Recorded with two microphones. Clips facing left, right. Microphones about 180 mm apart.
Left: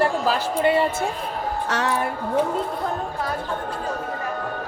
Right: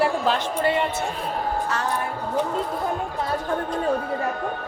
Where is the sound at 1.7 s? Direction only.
90° left.